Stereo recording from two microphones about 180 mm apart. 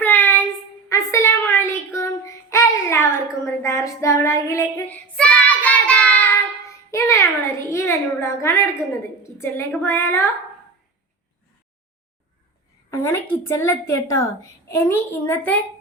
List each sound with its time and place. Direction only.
0.0 s child singing: 10° left (ahead or behind)
7.7 s a woman's voice: 15° left (ahead or behind)
12.9 s a sound: 15° left (ahead or behind)
13.6 s a woman's voice: 15° left (ahead or behind)